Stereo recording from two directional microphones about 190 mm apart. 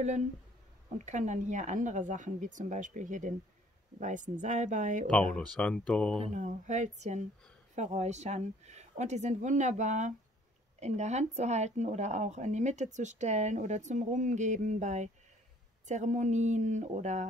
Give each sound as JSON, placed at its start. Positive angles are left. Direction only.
{"t": 0.9, "sound": "speech", "side_deg": -40}
{"t": 5.3, "sound": "speech", "side_deg": 5}
{"t": 6.1, "sound": "speech", "side_deg": -35}